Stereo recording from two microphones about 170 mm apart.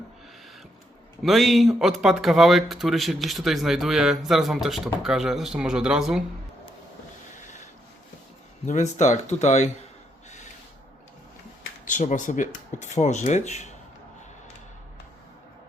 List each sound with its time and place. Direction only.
1.2 s speech: centre (ahead or behind)
7.3 s a sound: 45° left (ahead or behind)
8.6 s speech: 45° left (ahead or behind)
11.9 s speech: 50° left (ahead or behind)